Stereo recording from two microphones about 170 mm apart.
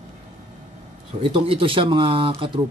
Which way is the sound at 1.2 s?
30° right (ahead or behind).